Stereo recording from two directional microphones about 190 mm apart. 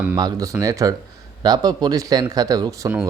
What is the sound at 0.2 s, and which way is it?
Speech, 20° right (ahead or behind).